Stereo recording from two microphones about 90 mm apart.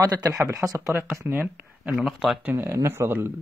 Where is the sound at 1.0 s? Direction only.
25° right (ahead or behind).